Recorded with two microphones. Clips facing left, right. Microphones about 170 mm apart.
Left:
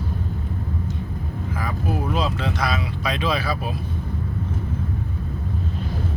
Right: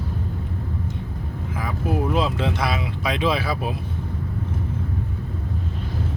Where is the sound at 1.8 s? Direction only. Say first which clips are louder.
Right 3 dB; 20° right (ahead or behind).